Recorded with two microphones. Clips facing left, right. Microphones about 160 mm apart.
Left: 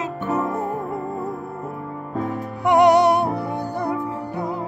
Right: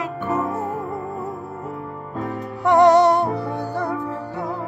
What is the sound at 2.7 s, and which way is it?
Music, 15° left (ahead or behind).